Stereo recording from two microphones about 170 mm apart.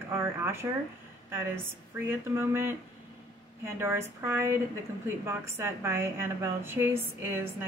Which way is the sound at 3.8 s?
15° right (ahead or behind).